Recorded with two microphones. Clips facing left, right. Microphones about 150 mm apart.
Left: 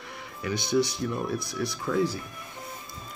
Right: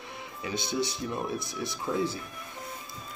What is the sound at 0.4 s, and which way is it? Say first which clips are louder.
Speech: left 6 dB; 25° right (ahead or behind).